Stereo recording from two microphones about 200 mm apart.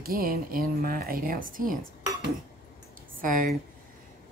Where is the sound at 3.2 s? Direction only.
45° right (ahead or behind).